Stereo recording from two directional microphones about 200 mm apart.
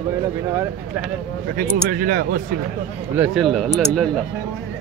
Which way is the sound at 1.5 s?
45° right (ahead or behind).